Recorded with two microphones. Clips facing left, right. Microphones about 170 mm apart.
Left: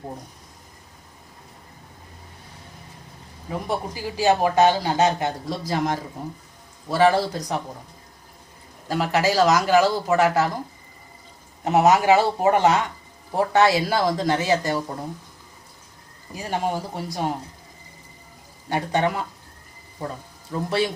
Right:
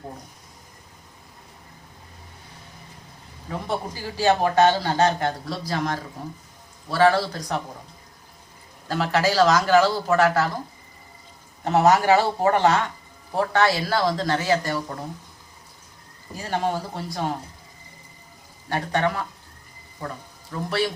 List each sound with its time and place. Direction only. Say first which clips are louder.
3.5 s a man's voice: left 1 dB; 10° left (ahead or behind)
8.9 s a man's voice: left 1 dB; 10° left (ahead or behind)
11.6 s a man's voice: left 1 dB; 15° left (ahead or behind)
16.4 s a man's voice: even; 15° left (ahead or behind)
18.7 s a man's voice: left 1 dB; 15° left (ahead or behind)
20.5 s speech: left 2 dB; 20° left (ahead or behind)